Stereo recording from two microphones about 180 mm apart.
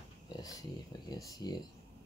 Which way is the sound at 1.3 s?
20° left (ahead or behind).